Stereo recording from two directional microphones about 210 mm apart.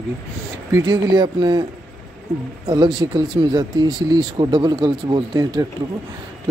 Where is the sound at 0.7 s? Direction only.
20° right (ahead or behind).